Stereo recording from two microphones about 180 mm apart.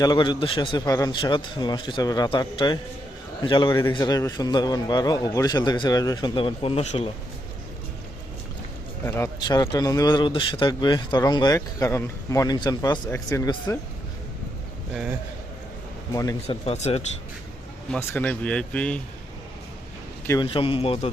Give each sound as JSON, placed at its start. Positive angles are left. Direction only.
{"t": 0.0, "sound": "speech", "side_deg": 25}
{"t": 9.0, "sound": "speech", "side_deg": 15}
{"t": 16.1, "sound": "speech", "side_deg": 20}
{"t": 16.6, "sound": "a man's voice", "side_deg": 35}
{"t": 17.9, "sound": "speech", "side_deg": 10}
{"t": 20.4, "sound": "a man's voice", "side_deg": 30}